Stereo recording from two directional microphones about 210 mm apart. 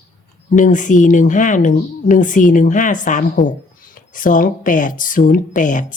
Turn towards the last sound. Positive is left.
turn(degrees=40)  # may be behind; listen again after turning